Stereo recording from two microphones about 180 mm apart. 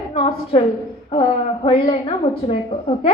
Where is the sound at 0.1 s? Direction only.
30° left (ahead or behind).